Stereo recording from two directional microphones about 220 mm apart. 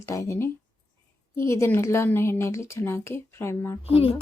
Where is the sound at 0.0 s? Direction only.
15° left (ahead or behind).